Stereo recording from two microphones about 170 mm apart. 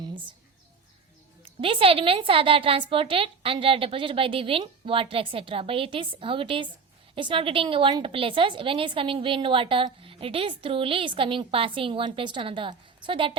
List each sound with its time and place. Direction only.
1.6 s a woman's voice: 30° right (ahead or behind)